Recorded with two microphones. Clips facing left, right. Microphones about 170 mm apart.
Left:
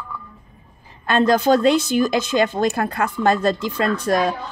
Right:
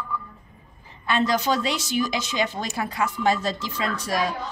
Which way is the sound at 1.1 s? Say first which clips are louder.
Left 7 dB; 50° left (ahead or behind).